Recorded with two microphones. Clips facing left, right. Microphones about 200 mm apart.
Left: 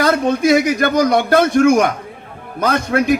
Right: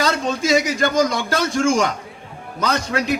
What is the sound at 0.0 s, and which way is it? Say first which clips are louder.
A man's voice: left 6 dB; 50° left (ahead or behind).